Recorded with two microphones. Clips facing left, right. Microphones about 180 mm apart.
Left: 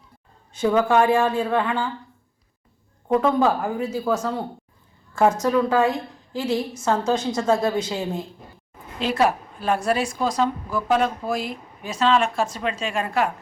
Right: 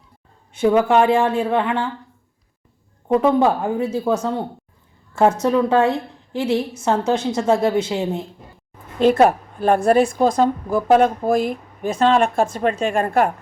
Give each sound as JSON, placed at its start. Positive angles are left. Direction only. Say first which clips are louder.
{"t": 0.6, "sound": "a woman's voice", "louder": "right 3 dB", "side_deg": -20}
{"t": 3.4, "sound": "a woman's voice", "louder": "right 3 dB", "side_deg": -25}
{"t": 9.0, "sound": "a woman's voice", "louder": "right 7 dB", "side_deg": -50}